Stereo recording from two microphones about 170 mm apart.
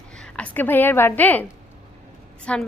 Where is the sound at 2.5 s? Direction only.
5° left (ahead or behind).